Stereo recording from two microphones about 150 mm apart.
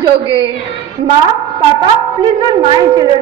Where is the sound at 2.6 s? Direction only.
35° right (ahead or behind).